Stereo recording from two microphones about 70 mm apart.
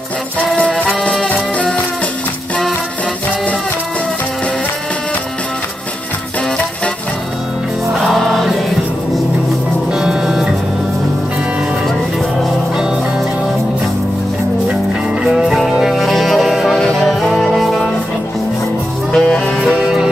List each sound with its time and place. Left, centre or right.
0.7 s music: centre
7.9 s music: centre
11.9 s music: centre
15.2 s music: centre
19.1 s music: centre